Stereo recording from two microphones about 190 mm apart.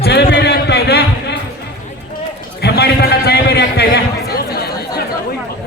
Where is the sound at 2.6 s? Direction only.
60° left (ahead or behind).